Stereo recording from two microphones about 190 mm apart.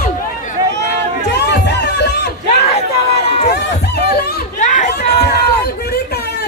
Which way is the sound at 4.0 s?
60° left (ahead or behind).